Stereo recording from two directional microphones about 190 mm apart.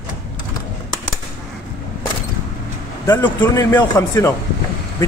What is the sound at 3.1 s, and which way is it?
A man's voice, 10° left (ahead or behind).